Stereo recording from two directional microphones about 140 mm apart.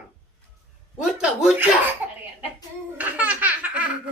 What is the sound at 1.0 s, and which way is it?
Speech, 5° right (ahead or behind).